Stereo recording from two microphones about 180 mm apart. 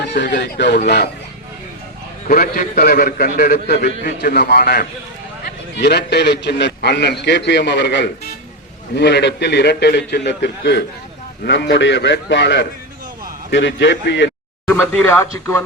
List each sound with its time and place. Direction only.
0.1 s a man's voice: 70° left (ahead or behind)
2.2 s a man's voice: 55° left (ahead or behind); by 10.8 s 70° left (ahead or behind)
11.4 s a man's voice: 85° left
14.7 s speech: 10° left (ahead or behind)